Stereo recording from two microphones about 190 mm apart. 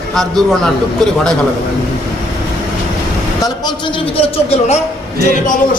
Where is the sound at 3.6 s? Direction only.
25° left (ahead or behind).